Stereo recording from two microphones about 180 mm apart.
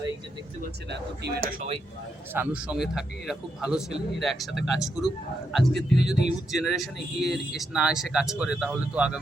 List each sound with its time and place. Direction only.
0.9 s speech: 70° right (ahead or behind)
2.3 s speech: 10° right (ahead or behind)